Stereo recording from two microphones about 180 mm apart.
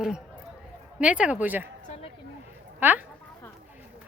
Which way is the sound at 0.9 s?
5° right (ahead or behind).